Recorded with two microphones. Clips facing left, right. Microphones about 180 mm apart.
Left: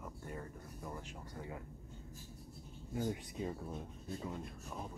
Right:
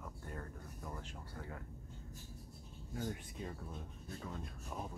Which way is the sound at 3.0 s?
20° left (ahead or behind).